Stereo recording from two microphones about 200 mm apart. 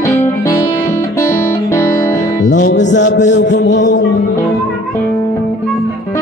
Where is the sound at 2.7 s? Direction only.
65° left (ahead or behind).